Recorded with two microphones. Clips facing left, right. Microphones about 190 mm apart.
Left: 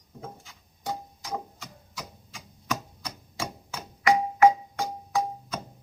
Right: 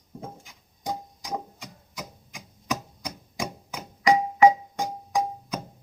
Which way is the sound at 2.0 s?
15° right (ahead or behind).